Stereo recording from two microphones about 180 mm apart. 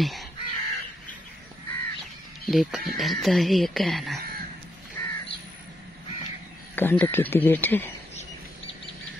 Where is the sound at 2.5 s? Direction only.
Centre (ahead or behind).